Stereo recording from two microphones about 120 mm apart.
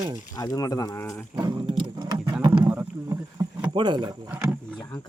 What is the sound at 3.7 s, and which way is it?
Speech, 40° right (ahead or behind).